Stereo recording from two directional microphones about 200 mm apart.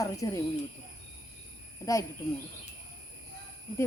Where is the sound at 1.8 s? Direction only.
15° left (ahead or behind).